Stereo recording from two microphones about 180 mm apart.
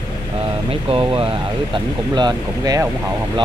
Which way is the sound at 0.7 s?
30° right (ahead or behind).